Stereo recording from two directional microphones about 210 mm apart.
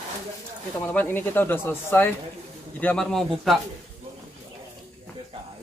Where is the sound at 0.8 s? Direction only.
10° left (ahead or behind).